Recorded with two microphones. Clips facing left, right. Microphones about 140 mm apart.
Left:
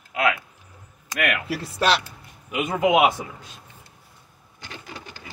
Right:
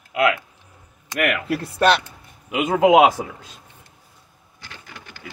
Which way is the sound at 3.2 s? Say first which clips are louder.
Right 5 dB; 75° right (ahead or behind).